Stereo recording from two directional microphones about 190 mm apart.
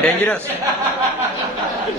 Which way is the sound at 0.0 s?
10° left (ahead or behind).